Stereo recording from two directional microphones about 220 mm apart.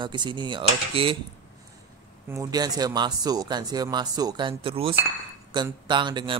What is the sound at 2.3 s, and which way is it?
Speech, 15° right (ahead or behind).